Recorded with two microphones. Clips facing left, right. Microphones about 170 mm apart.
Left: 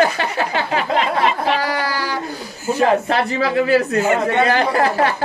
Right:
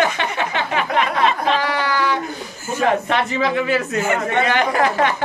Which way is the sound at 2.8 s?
35° left (ahead or behind).